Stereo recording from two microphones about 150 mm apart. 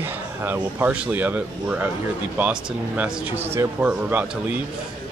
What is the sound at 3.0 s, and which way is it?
Speech, 10° right (ahead or behind).